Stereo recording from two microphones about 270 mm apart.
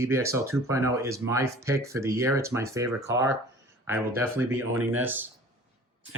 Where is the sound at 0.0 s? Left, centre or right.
Centre.